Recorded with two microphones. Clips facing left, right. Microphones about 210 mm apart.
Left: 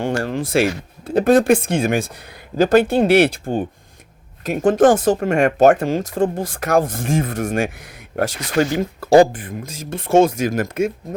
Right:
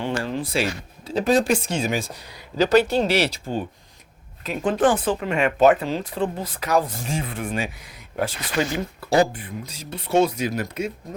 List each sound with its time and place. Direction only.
0.0 s speech: 45° left (ahead or behind)
7.8 s speech: 70° left (ahead or behind)
9.3 s speech: 50° left (ahead or behind)